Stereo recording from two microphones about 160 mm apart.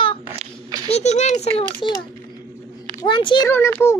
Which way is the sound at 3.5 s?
15° left (ahead or behind).